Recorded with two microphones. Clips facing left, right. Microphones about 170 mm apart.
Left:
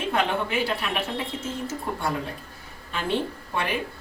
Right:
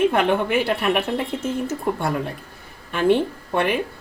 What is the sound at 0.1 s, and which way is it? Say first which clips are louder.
A woman's voice: right 6 dB; 55° right (ahead or behind).